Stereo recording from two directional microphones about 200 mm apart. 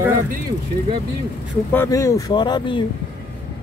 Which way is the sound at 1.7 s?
15° left (ahead or behind).